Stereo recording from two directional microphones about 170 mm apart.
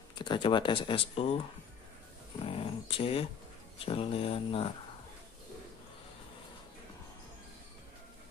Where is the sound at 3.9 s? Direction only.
35° left (ahead or behind).